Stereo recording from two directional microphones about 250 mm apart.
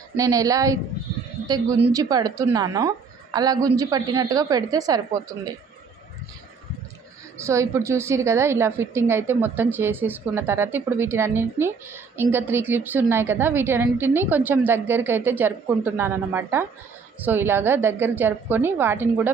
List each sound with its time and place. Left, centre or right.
0.2 s a woman's voice: centre
7.4 s a woman's voice: centre